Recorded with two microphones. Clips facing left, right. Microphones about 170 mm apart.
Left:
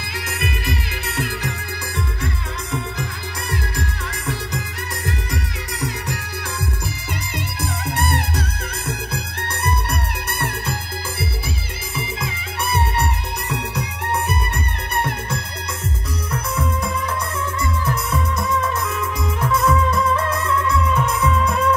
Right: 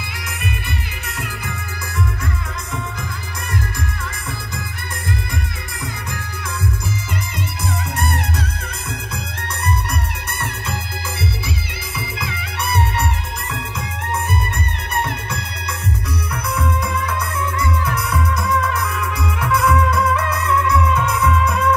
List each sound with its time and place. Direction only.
0.5 s music: 35° left (ahead or behind)
5.3 s music: 35° left (ahead or behind)
7.6 s music: 30° left (ahead or behind)
16.3 s music: 30° left (ahead or behind)
18.9 s music: 25° left (ahead or behind)